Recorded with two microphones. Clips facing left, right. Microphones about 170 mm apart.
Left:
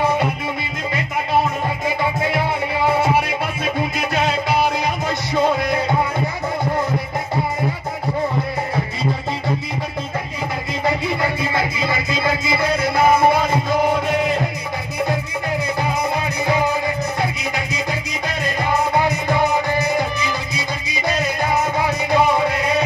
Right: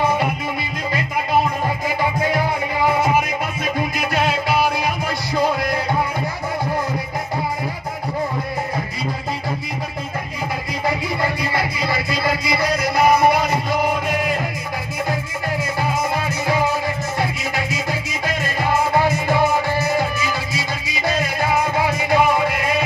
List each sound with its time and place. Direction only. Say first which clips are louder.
2.9 s music: left 1 dB; 30° left (ahead or behind)
12.4 s music: left 1 dB; 25° left (ahead or behind)
19.1 s music: right 1 dB; 20° left (ahead or behind)